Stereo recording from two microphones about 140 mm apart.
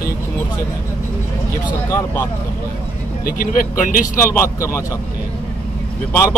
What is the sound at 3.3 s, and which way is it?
Speech, 85° left.